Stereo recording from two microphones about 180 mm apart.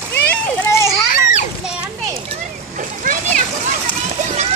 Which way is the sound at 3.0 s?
45° right (ahead or behind).